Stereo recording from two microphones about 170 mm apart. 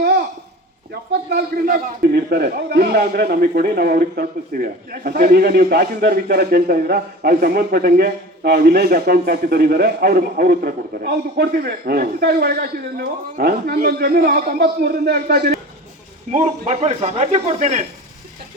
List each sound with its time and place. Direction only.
1.3 s a man's voice: 65° right (ahead or behind)
16.3 s speech: 45° right (ahead or behind)